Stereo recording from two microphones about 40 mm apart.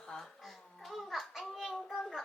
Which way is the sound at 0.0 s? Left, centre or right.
Centre.